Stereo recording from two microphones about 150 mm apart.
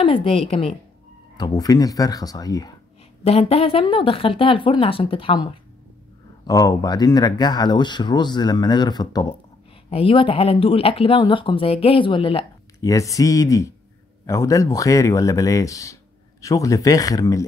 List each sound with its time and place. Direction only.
0.0 s speech: 40° left (ahead or behind)
1.3 s speech: 30° left (ahead or behind)
3.3 s speech: 40° left (ahead or behind)
6.4 s speech: 25° left (ahead or behind)
9.8 s speech: 40° left (ahead or behind)
12.8 s speech: 20° left (ahead or behind)